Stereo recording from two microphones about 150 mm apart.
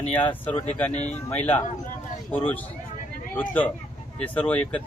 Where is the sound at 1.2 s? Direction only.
10° left (ahead or behind).